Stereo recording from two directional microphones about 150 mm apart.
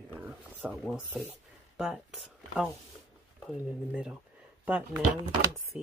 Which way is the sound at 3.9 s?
5° right (ahead or behind).